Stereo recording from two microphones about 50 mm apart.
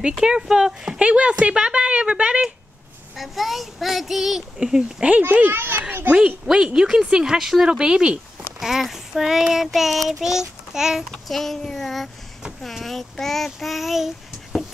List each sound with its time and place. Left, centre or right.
0.2 s speech: centre
3.2 s a child's voice: centre
4.6 s child singing: centre
5.5 s a child's voice: right
6.1 s child singing: centre
7.8 s speech: centre
8.5 s child singing: centre
11.2 s a child's voice: centre